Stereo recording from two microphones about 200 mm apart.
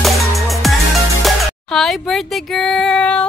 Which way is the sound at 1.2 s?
Centre (ahead or behind).